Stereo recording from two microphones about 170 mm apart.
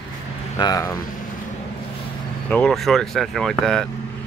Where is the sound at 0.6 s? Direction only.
20° left (ahead or behind).